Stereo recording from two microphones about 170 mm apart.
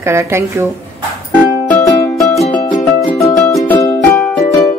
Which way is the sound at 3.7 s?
10° left (ahead or behind).